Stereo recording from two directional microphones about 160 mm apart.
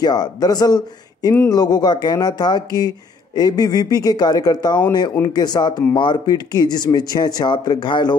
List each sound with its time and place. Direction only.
0.0 s speech: 25° left (ahead or behind)